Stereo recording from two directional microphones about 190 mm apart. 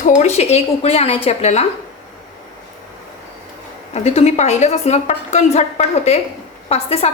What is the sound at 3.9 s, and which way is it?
A woman's voice, 35° left (ahead or behind).